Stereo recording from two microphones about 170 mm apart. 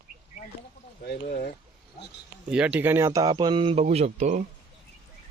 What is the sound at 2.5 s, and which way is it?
Speech, 10° right (ahead or behind).